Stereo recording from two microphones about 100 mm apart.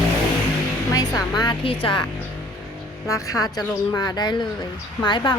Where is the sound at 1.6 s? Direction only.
65° left (ahead or behind).